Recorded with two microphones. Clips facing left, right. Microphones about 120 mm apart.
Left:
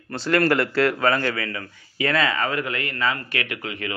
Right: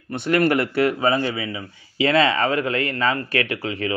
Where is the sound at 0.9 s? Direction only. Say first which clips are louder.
Right 1 dB; 20° right (ahead or behind).